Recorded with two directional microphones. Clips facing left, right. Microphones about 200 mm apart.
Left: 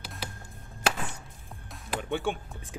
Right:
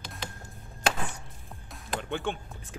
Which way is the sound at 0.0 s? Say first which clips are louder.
Even; 5° left (ahead or behind).